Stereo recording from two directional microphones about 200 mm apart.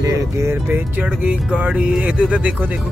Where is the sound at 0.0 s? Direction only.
15° right (ahead or behind).